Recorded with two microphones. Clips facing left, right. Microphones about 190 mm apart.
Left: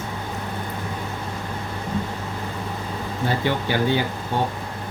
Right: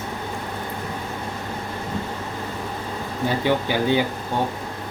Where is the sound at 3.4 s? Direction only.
15° right (ahead or behind).